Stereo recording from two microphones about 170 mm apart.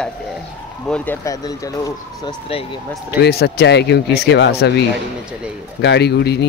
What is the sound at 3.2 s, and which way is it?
Speech, 75° left (ahead or behind).